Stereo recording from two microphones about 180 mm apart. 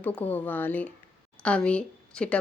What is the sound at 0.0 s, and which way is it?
A woman's voice, 10° left (ahead or behind).